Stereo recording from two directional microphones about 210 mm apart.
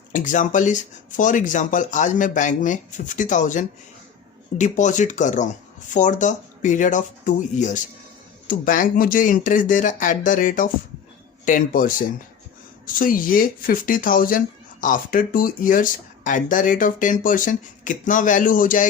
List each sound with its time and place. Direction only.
0.1 s speech: 35° left (ahead or behind)